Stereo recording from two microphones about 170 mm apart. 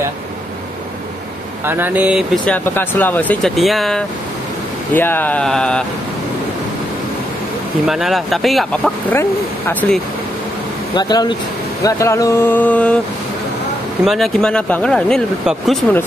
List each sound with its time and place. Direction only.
1.7 s speech: 10° right (ahead or behind)
2.4 s speech: 10° left (ahead or behind)
4.9 s speech: 10° left (ahead or behind)
7.8 s speech: centre (ahead or behind)
11.0 s speech: 25° left (ahead or behind); by 12.9 s 10° left (ahead or behind)
14.0 s speech: centre (ahead or behind)